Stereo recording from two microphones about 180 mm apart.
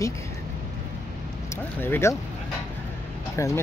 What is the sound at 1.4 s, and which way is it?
Speech, 15° left (ahead or behind).